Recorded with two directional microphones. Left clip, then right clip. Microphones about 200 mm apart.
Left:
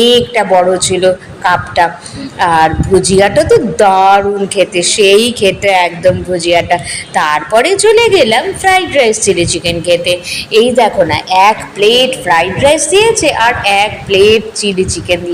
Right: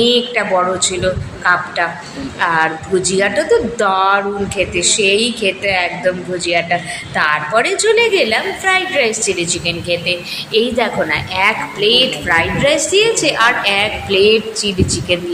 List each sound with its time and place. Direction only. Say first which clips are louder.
0.0 s a woman's voice: left 5 dB; 20° left (ahead or behind)